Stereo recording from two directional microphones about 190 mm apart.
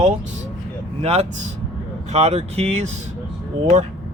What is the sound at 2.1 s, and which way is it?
Speech, 35° right (ahead or behind).